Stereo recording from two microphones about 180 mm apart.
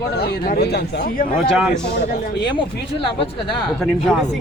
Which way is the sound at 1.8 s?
70° left (ahead or behind).